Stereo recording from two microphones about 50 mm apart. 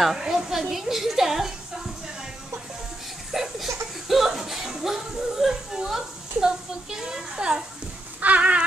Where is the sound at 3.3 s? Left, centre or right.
Centre.